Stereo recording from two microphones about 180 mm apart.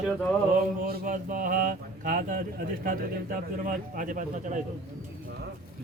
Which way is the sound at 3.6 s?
50° right (ahead or behind).